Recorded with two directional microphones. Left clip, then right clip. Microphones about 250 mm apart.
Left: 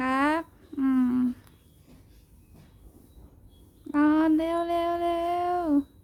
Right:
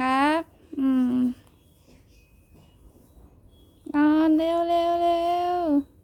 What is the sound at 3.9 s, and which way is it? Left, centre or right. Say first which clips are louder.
Child singing: right 2 dB; centre.